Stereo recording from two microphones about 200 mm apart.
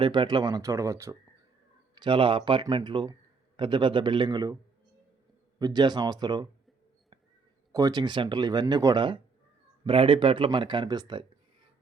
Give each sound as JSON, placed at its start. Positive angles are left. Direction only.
{"t": 0.0, "sound": "speech", "side_deg": -20}
{"t": 2.0, "sound": "speech", "side_deg": -25}
{"t": 5.5, "sound": "speech", "side_deg": -20}
{"t": 7.7, "sound": "speech", "side_deg": -20}